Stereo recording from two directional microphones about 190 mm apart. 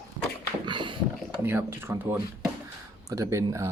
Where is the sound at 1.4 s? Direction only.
10° right (ahead or behind).